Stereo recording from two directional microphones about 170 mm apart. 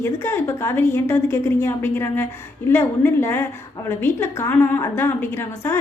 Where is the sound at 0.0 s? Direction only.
15° left (ahead or behind).